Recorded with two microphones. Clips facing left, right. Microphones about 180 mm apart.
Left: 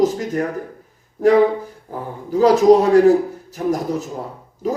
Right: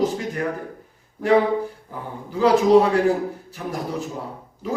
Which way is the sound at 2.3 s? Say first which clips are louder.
Left 4 dB; 40° left (ahead or behind).